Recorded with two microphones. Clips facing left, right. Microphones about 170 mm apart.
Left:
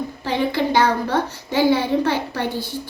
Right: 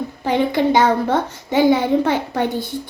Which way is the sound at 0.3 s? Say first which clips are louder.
Right 4 dB; 20° right (ahead or behind).